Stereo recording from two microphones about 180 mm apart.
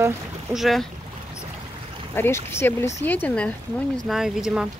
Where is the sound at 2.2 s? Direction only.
15° left (ahead or behind).